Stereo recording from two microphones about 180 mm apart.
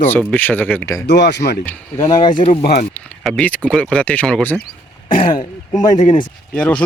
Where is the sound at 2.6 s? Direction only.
60° left (ahead or behind).